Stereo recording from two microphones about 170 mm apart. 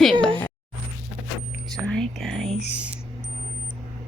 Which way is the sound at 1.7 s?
5° left (ahead or behind).